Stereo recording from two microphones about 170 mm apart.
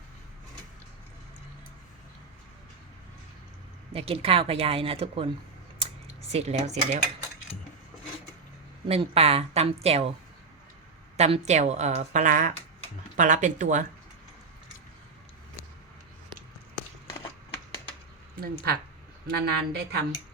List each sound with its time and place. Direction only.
3.9 s speech: 35° right (ahead or behind)
6.3 s speech: 40° right (ahead or behind)
8.9 s speech: 35° right (ahead or behind)
11.2 s a woman's voice: 40° right (ahead or behind)
17.1 s a sound: 25° left (ahead or behind)
18.3 s speech: 60° right (ahead or behind)